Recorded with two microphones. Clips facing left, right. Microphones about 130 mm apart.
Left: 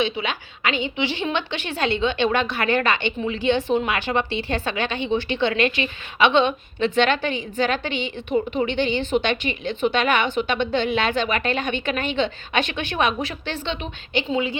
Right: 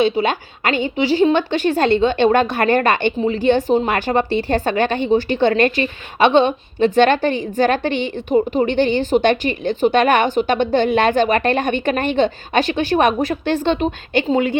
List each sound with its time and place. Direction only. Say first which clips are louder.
0.0 s a woman's voice: right 8 dB; 45° right (ahead or behind)